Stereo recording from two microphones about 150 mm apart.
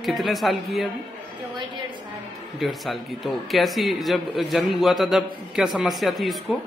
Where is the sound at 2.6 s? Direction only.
Centre (ahead or behind).